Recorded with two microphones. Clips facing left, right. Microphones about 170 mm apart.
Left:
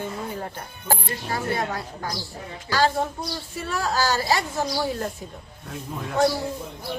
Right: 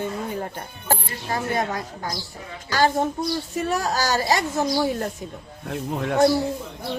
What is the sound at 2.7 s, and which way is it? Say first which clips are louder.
Speech: right 2 dB; 20° right (ahead or behind).